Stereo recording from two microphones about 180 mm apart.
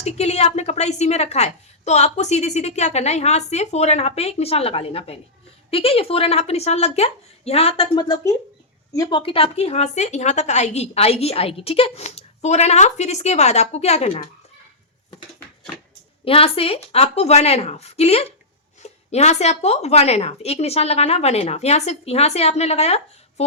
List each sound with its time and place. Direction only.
0.0 s speech: 35° left (ahead or behind)
16.2 s speech: 30° left (ahead or behind)